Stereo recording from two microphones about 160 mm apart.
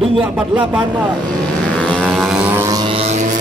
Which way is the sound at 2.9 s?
40° right (ahead or behind).